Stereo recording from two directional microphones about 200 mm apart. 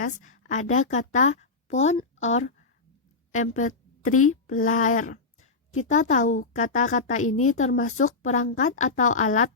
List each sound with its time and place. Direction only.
0.0 s a woman's voice: 40° left (ahead or behind)